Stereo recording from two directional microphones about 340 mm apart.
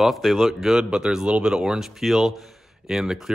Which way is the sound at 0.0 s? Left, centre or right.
Centre.